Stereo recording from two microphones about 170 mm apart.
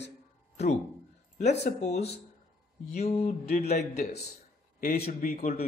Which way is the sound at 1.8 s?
40° left (ahead or behind).